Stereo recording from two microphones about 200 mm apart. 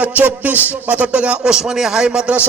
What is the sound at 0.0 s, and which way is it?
Speech, 5° right (ahead or behind).